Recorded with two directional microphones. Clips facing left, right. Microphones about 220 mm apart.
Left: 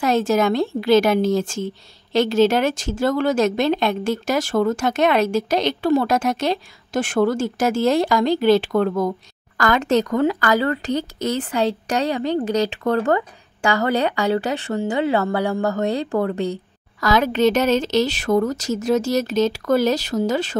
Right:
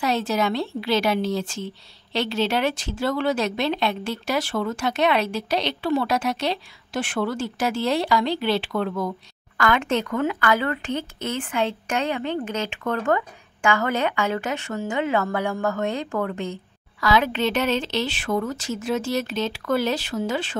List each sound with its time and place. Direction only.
0.0 s a woman's voice: 45° left (ahead or behind)